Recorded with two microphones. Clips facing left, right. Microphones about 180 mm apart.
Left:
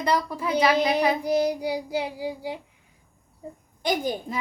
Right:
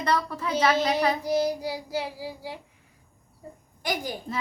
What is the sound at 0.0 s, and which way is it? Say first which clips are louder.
A child's voice: left 2 dB; 10° left (ahead or behind).